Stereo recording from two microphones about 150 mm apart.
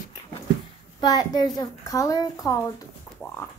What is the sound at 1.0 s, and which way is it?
A child's voice, 25° left (ahead or behind).